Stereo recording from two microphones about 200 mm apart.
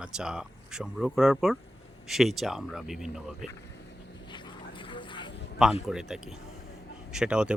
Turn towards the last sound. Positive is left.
turn(degrees=-5)  # may be behind; listen again after turning